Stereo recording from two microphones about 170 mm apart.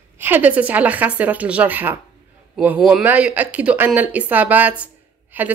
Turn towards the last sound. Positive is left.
turn(degrees=-10)  # may be behind; listen again after turning